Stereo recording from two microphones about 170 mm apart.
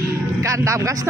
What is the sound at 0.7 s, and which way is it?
Speech, 20° right (ahead or behind).